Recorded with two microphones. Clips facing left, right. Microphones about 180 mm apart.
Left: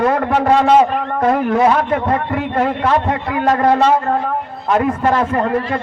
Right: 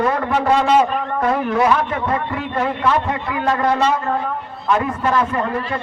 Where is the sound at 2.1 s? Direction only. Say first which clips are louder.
Left 4 dB; 35° left (ahead or behind).